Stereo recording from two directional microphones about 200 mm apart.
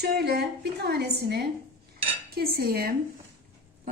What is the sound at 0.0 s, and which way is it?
Speech, 55° right (ahead or behind).